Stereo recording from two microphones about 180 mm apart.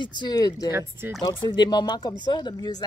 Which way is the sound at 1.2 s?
25° left (ahead or behind).